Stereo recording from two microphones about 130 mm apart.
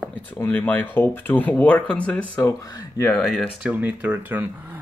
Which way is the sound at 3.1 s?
5° left (ahead or behind).